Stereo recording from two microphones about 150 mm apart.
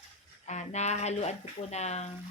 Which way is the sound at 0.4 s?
50° left (ahead or behind).